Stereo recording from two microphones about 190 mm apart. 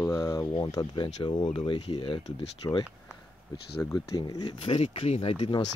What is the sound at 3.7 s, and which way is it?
Speech, 15° left (ahead or behind).